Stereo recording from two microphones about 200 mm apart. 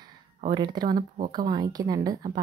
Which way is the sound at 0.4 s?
20° right (ahead or behind).